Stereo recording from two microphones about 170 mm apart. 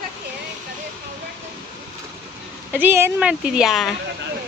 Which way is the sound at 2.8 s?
15° right (ahead or behind).